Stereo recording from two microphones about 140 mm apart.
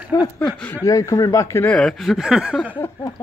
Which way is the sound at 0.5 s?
10° left (ahead or behind).